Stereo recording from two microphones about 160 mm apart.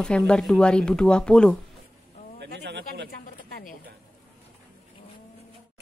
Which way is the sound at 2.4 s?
90° right.